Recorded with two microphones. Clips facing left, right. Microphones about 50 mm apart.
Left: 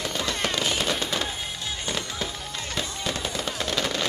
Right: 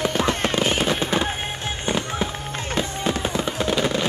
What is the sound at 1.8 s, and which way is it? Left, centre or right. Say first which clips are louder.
Fireworks: right 8 dB; right.